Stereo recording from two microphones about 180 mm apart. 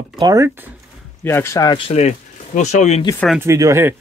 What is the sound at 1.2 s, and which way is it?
Speech, 15° left (ahead or behind).